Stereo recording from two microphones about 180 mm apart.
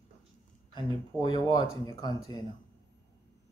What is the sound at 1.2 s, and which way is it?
Speech, 25° left (ahead or behind).